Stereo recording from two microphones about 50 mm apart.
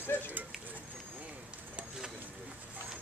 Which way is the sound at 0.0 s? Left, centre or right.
Left.